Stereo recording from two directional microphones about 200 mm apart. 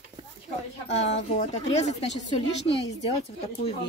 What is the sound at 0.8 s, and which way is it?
A woman's voice, 35° left (ahead or behind).